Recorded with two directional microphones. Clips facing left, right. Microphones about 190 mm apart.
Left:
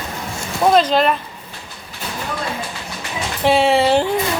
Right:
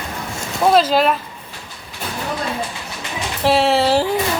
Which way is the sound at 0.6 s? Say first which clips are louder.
Even; 5° right (ahead or behind).